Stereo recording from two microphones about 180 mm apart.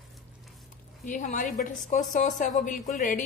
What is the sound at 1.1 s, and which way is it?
A woman's voice, 45° left (ahead or behind).